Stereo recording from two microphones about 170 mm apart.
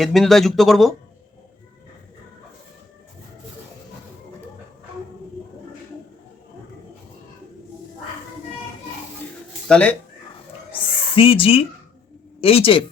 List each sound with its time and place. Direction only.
0.0 s speech: centre (ahead or behind)
9.6 s speech: 5° left (ahead or behind)
10.7 s a sound: 30° left (ahead or behind)
12.4 s speech: 35° left (ahead or behind)